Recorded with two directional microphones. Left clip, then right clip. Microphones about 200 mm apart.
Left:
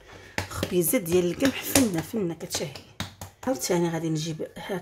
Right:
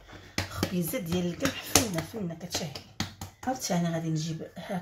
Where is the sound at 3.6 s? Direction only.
55° left (ahead or behind).